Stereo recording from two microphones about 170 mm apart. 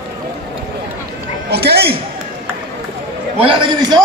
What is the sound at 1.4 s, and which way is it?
Speech, 70° right (ahead or behind).